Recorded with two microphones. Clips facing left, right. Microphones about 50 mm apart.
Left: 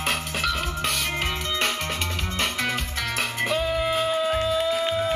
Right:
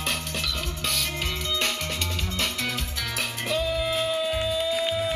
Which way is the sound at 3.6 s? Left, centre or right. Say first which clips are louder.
Even; left.